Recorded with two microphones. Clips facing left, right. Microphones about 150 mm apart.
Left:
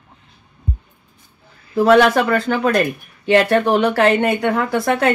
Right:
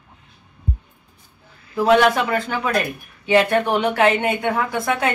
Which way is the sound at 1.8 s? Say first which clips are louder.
Left 3 dB; 50° left (ahead or behind).